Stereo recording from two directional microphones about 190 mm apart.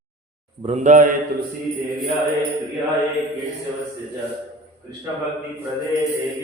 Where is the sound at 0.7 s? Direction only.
40° right (ahead or behind).